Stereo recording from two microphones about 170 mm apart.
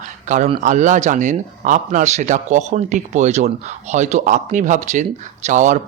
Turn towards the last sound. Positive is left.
turn(degrees=-45)  # may be behind; listen again after turning